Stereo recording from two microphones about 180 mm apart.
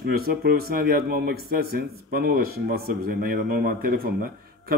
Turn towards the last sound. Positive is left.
turn(degrees=-55)  # may be behind; listen again after turning